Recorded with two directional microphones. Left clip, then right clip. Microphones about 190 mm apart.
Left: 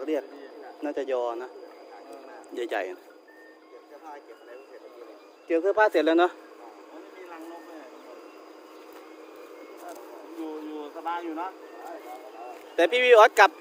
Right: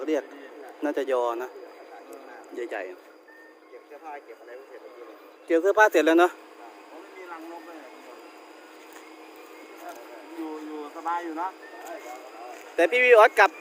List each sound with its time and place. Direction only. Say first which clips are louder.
0.0 s speech: right 2 dB; 15° right (ahead or behind)
2.6 s speech: left 3 dB; 15° left (ahead or behind)
5.5 s speech: right 3 dB; 20° right (ahead or behind)
11.0 s speech: right 3 dB; 20° left (ahead or behind)
12.7 s speech: even; centre (ahead or behind)